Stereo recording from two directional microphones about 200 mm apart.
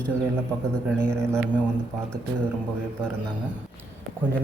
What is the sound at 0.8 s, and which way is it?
Speech, 15° right (ahead or behind).